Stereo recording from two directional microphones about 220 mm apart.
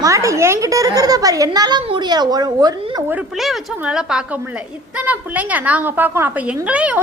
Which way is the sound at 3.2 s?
Centre (ahead or behind).